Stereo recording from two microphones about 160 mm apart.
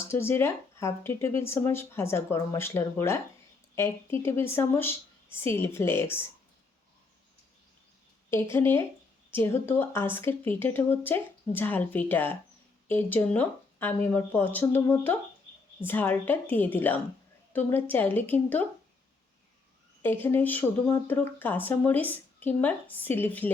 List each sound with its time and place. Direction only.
0.1 s speech: 15° left (ahead or behind)
8.3 s speech: 15° left (ahead or behind)
20.0 s speech: 15° left (ahead or behind)